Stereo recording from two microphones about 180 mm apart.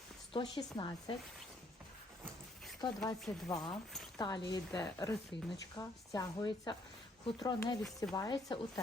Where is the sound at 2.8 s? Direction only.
20° left (ahead or behind).